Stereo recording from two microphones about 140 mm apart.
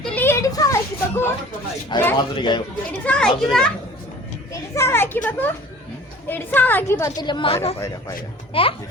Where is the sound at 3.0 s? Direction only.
5° left (ahead or behind).